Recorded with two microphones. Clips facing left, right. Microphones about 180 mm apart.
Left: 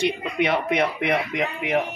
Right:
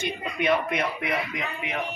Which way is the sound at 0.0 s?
70° left (ahead or behind).